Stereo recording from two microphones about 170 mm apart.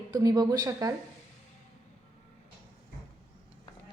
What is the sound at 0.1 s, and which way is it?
Speech, 20° right (ahead or behind).